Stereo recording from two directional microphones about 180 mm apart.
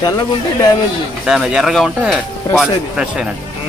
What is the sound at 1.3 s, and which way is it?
Speech, centre (ahead or behind).